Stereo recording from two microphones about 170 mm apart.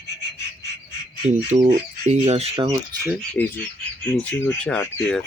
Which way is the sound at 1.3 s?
45° right (ahead or behind).